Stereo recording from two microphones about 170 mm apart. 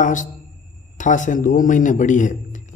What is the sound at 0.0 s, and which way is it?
A man's voice, 50° left (ahead or behind).